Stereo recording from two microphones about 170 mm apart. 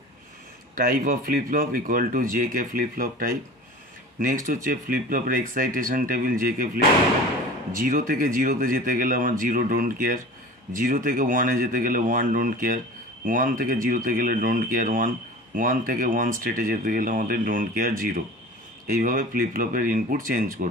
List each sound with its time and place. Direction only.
0.7 s speech: 55° right (ahead or behind)